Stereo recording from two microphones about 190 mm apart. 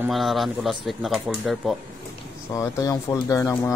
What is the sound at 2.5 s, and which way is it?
Speech, 15° left (ahead or behind).